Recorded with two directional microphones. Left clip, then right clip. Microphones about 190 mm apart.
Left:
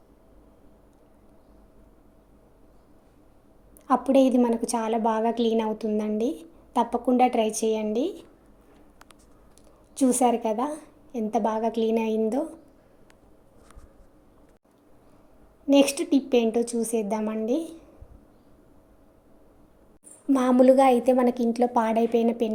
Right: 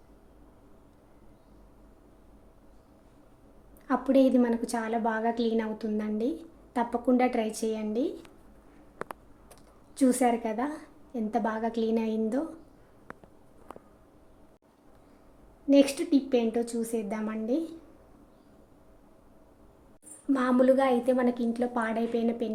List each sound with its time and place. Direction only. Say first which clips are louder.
3.8 s a woman's voice: left 4 dB; 20° left (ahead or behind)
7.3 s speech: left 6 dB; 15° right (ahead or behind)
9.9 s a woman's voice: left 3 dB; 10° left (ahead or behind)
15.7 s a woman's voice: left 3 dB; 25° left (ahead or behind)
20.3 s a woman's voice: left 5 dB; 20° left (ahead or behind)